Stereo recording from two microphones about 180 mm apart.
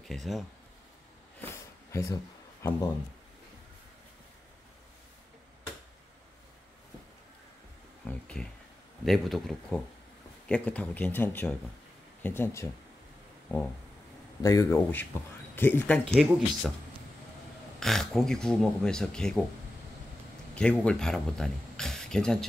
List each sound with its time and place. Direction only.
0.1 s speech: centre (ahead or behind)
1.5 s a sound: 15° left (ahead or behind)
2.6 s speech: 15° left (ahead or behind)
8.1 s a sound: 5° left (ahead or behind)
9.0 s speech: centre (ahead or behind)
14.4 s speech: 20° left (ahead or behind); by 16.7 s 5° left (ahead or behind)
17.7 s speech: centre (ahead or behind)
20.5 s speech: 5° left (ahead or behind)